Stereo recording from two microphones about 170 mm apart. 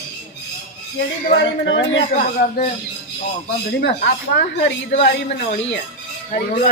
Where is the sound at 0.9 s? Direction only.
90° left.